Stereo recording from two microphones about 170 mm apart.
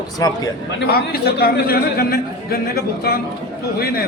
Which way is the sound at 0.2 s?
20° left (ahead or behind).